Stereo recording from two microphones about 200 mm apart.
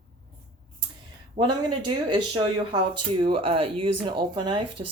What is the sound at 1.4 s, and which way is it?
Speech, 40° right (ahead or behind).